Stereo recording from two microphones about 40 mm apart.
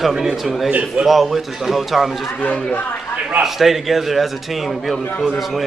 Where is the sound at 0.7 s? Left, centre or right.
Right.